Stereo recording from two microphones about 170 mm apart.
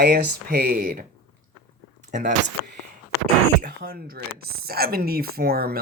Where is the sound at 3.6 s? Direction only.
60° right (ahead or behind).